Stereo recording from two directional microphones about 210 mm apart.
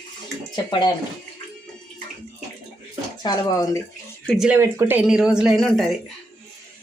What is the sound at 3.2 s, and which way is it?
Speech, 20° left (ahead or behind).